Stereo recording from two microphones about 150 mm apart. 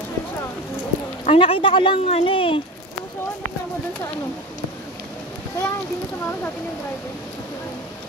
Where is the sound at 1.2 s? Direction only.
40° left (ahead or behind).